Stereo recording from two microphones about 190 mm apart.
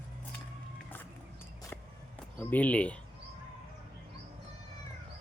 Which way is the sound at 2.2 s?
10° left (ahead or behind).